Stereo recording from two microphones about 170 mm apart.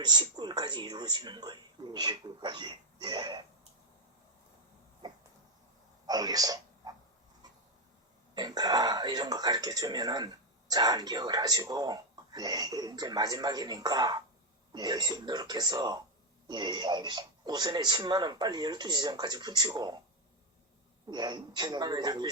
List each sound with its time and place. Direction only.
0.0 s speech: 25° right (ahead or behind)
5.0 s a sound: 25° right (ahead or behind)
8.4 s speech: 25° right (ahead or behind)
21.1 s speech: 25° right (ahead or behind)